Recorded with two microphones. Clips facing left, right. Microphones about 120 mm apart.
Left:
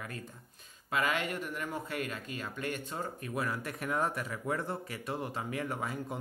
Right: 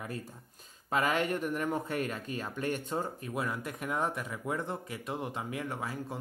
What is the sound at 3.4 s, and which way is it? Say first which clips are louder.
Speech: even; centre (ahead or behind).